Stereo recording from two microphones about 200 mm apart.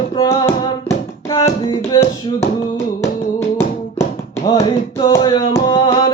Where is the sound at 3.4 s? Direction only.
15° left (ahead or behind).